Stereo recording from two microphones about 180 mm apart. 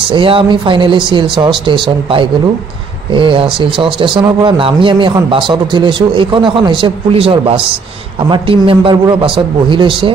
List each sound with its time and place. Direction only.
0.1 s speech: 30° right (ahead or behind)